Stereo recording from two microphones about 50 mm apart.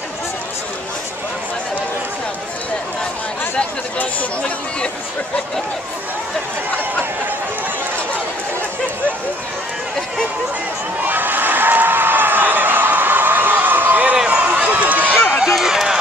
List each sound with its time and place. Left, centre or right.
4.0 s speech: left
11.1 s a sound: right
14.1 s run: right
15.4 s run: centre